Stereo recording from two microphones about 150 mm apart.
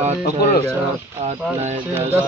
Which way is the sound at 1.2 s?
45° right (ahead or behind).